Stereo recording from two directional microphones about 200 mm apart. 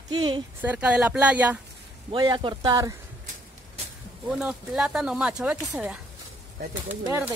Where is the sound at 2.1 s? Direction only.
20° right (ahead or behind).